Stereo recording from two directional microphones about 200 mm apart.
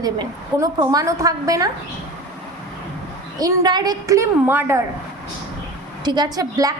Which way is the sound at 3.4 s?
20° right (ahead or behind).